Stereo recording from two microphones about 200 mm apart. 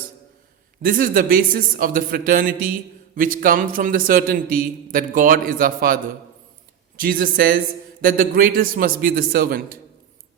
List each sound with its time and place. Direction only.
0.8 s a man's voice: 45° right (ahead or behind)